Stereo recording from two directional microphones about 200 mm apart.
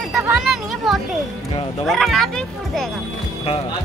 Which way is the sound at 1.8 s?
Centre (ahead or behind).